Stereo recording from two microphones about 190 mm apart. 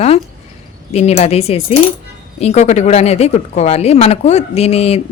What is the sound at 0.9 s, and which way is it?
Speech, 35° left (ahead or behind).